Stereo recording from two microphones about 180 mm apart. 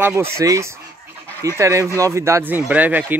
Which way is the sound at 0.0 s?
15° right (ahead or behind).